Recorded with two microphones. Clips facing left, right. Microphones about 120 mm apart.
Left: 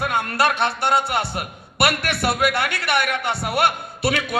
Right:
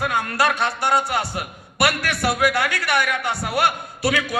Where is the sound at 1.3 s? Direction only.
25° left (ahead or behind).